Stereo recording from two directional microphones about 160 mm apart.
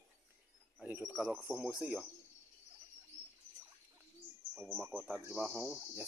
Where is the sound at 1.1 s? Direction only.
5° right (ahead or behind).